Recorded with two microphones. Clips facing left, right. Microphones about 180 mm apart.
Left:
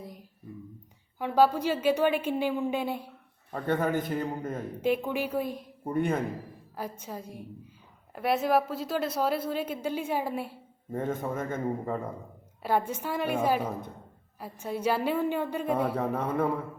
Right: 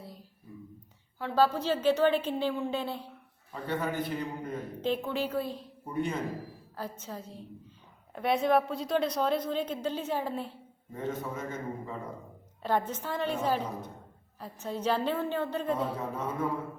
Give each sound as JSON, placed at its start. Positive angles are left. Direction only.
{"t": 0.0, "sound": "a sound", "side_deg": 15}
{"t": 1.2, "sound": "a woman's voice", "side_deg": 15}
{"t": 3.5, "sound": "a man's voice", "side_deg": 50}
{"t": 4.8, "sound": "a woman's voice", "side_deg": 10}
{"t": 5.8, "sound": "a man's voice", "side_deg": 55}
{"t": 6.7, "sound": "a woman's voice", "side_deg": 15}
{"t": 10.9, "sound": "a man's voice", "side_deg": 50}
{"t": 12.6, "sound": "a woman's voice", "side_deg": 10}
{"t": 15.7, "sound": "a man's voice", "side_deg": 65}